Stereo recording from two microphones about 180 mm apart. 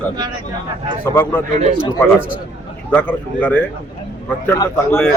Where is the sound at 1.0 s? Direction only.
10° left (ahead or behind).